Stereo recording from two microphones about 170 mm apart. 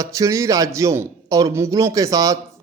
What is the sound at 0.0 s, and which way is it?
Speech, 20° right (ahead or behind).